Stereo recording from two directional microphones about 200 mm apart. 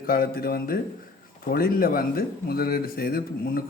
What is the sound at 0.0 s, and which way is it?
A man's voice, 45° left (ahead or behind).